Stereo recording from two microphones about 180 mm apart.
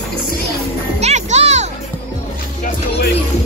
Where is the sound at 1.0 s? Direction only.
40° right (ahead or behind).